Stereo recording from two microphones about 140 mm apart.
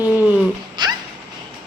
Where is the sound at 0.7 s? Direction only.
30° right (ahead or behind).